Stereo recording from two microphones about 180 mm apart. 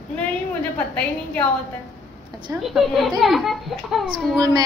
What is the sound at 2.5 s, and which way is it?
Speech, 15° right (ahead or behind).